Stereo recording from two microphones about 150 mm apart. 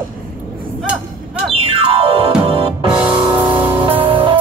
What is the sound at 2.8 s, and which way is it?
Music, 10° right (ahead or behind).